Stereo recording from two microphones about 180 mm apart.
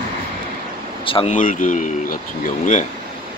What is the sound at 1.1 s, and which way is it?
Speech, 30° left (ahead or behind).